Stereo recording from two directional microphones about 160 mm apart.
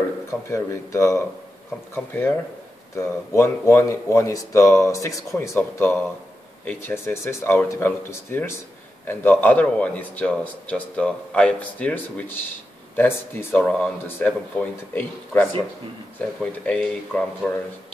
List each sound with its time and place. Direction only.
0.3 s a man's voice: 20° left (ahead or behind)